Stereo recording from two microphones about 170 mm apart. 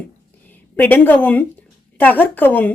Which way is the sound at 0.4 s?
10° left (ahead or behind).